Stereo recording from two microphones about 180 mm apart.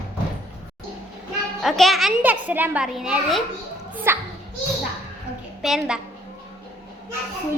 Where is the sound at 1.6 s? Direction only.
Centre (ahead or behind).